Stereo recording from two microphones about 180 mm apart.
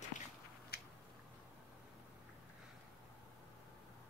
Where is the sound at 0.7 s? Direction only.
60° left (ahead or behind).